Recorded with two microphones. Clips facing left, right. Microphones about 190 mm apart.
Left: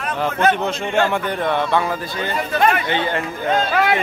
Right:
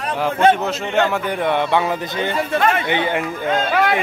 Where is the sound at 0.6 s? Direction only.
5° right (ahead or behind).